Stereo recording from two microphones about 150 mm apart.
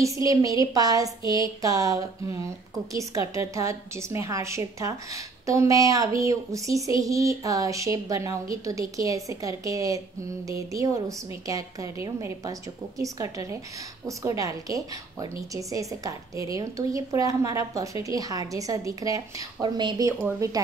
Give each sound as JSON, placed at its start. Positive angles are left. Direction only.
{"t": 0.0, "sound": "speech", "side_deg": -20}